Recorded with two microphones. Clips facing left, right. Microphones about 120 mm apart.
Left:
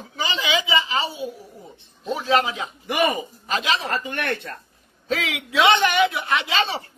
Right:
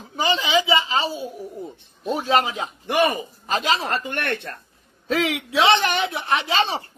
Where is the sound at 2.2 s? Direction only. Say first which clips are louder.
Even; 45° right (ahead or behind).